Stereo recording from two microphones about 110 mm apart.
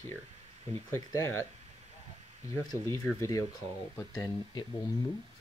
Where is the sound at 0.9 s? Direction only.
25° left (ahead or behind).